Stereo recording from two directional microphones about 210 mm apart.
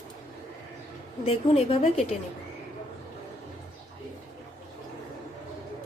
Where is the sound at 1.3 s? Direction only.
25° left (ahead or behind).